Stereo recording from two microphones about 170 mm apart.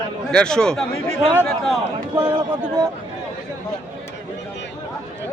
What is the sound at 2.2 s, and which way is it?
Speech, 25° right (ahead or behind).